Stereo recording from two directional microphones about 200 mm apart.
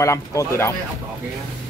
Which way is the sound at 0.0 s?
15° left (ahead or behind).